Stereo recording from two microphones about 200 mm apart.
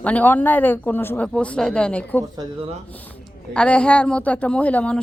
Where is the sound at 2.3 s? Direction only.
20° right (ahead or behind).